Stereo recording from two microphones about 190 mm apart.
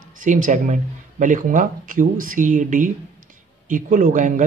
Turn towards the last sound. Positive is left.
turn(degrees=-40)  # may be behind; listen again after turning